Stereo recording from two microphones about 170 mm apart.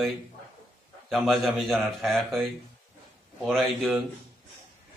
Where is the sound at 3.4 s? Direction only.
Centre (ahead or behind).